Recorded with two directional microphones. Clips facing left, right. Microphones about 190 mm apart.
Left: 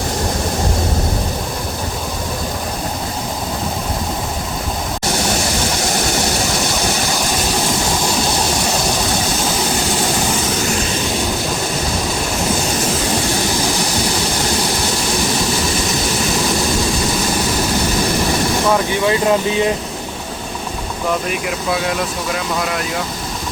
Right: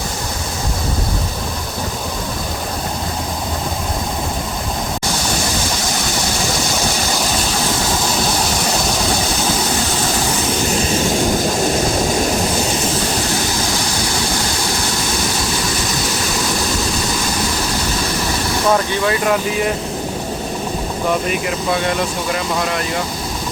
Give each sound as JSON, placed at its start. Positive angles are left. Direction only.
{"t": 19.0, "sound": "speech", "side_deg": 25}
{"t": 21.2, "sound": "speech", "side_deg": 5}